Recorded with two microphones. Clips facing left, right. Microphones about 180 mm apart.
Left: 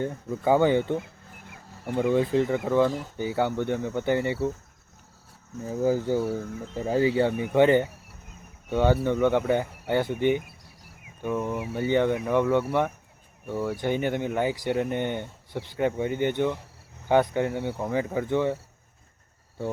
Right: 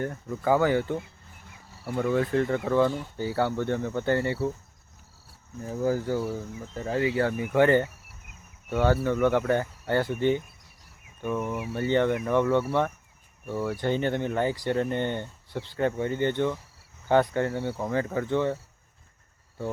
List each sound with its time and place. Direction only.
0.0 s speech: 20° left (ahead or behind)
2.0 s speech: 15° left (ahead or behind)
5.6 s speech: 20° left (ahead or behind)